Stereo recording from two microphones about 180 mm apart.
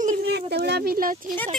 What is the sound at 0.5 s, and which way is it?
Speech, 65° right (ahead or behind).